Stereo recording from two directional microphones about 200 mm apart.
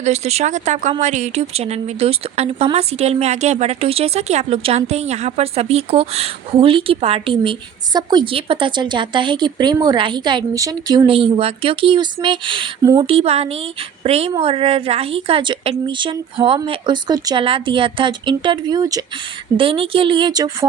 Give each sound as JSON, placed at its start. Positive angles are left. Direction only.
{"t": 0.0, "sound": "speech", "side_deg": -35}